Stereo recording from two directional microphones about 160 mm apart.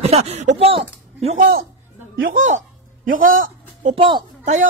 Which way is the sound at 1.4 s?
70° right (ahead or behind).